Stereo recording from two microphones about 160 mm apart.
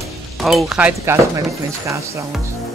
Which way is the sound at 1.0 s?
20° right (ahead or behind).